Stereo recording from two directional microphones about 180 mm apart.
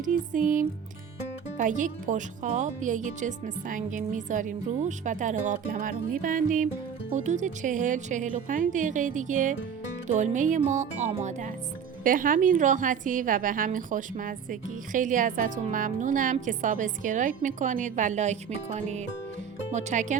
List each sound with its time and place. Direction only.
0.0 s a woman's voice: 45° right (ahead or behind)